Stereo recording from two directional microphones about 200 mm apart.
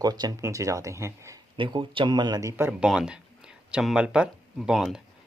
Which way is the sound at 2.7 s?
5° right (ahead or behind).